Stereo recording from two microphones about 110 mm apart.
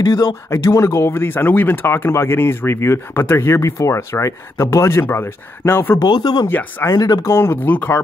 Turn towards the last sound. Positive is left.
turn(degrees=20)  # may be behind; listen again after turning